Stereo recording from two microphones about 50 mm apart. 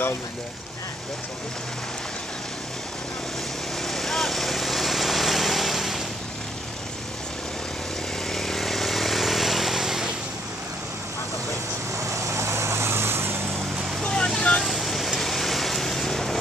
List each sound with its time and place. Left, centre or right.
3.8 s vehicle: centre
8.3 s vehicle: centre
12.0 s vehicle: right
14.0 s vehicle: centre
14.6 s vehicle: centre